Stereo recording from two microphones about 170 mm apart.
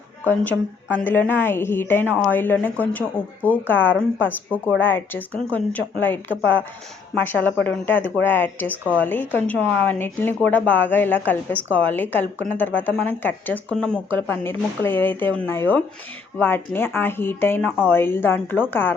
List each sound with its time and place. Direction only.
1.0 s a woman's voice: 10° left (ahead or behind)